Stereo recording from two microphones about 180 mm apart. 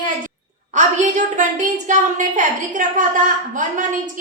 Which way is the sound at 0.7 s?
40° right (ahead or behind).